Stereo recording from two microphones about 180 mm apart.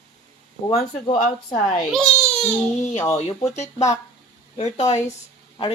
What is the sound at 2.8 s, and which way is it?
Speech, 35° left (ahead or behind).